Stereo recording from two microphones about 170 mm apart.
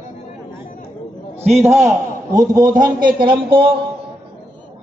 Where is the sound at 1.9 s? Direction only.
20° right (ahead or behind).